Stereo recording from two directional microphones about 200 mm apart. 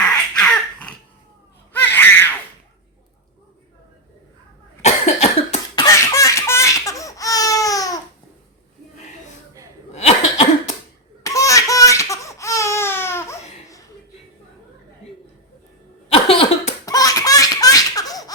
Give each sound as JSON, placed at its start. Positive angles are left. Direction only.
{"t": 0.0, "sound": "cough", "side_deg": 5}
{"t": 1.7, "sound": "baby cry", "side_deg": 10}
{"t": 4.8, "sound": "cough", "side_deg": 35}
{"t": 5.8, "sound": "laughter", "side_deg": 15}
{"t": 9.9, "sound": "cough", "side_deg": 30}
{"t": 11.2, "sound": "laughter", "side_deg": 15}
{"t": 16.1, "sound": "laughter", "side_deg": 30}